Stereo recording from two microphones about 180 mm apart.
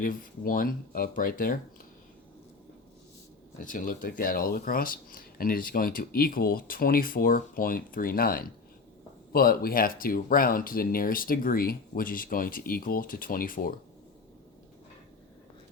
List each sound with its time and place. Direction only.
0.0 s speech: 50° left (ahead or behind)
3.6 s speech: 50° left (ahead or behind)